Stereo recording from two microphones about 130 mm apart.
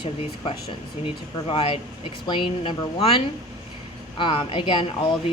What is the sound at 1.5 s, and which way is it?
A woman's voice, 45° left (ahead or behind).